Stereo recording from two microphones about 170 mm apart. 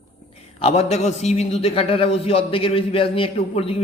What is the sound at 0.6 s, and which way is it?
A man's voice, 35° left (ahead or behind).